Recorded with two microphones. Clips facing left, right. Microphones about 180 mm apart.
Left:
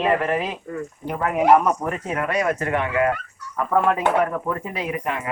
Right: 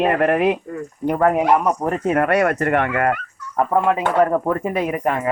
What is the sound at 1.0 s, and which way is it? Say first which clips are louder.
Speech: right 10 dB; 50° right (ahead or behind).